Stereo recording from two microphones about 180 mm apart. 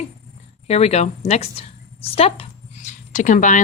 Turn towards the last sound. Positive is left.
turn(degrees=45)  # may be behind; listen again after turning